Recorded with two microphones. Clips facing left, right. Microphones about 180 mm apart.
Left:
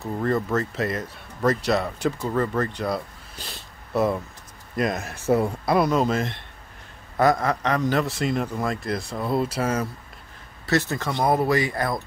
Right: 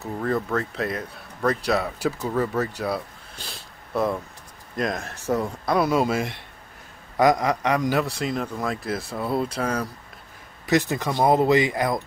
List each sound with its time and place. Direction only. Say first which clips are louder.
0.0 s a man's voice: left 1 dB; centre (ahead or behind)
5.8 s a man's voice: even; 10° right (ahead or behind)
10.7 s speech: right 2 dB; 15° right (ahead or behind)